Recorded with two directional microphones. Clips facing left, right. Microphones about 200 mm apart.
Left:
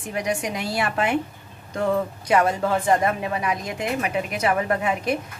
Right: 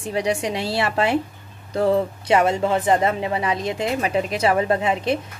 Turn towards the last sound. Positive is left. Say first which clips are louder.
# right 3 dB
turn(degrees=-25)  # may be behind; listen again after turning